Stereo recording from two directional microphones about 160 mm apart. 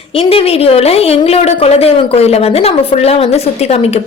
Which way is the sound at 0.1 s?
35° left (ahead or behind).